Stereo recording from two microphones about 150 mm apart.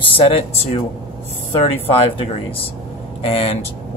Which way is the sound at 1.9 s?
40° left (ahead or behind).